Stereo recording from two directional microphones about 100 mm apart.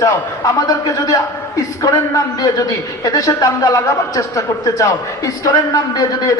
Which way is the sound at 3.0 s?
35° left (ahead or behind).